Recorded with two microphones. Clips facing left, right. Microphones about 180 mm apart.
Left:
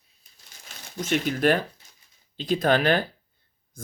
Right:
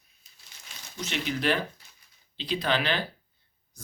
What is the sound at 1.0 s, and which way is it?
Speech, 50° left (ahead or behind).